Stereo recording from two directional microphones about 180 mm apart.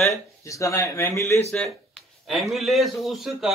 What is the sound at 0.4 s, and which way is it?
Speech, 15° left (ahead or behind).